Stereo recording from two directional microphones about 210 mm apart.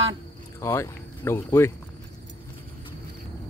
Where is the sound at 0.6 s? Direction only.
10° left (ahead or behind).